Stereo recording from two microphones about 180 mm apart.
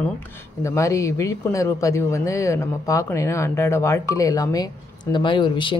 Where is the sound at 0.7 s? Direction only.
15° left (ahead or behind).